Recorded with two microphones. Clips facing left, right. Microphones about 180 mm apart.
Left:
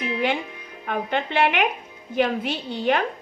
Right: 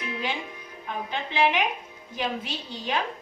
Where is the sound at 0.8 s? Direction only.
65° left (ahead or behind).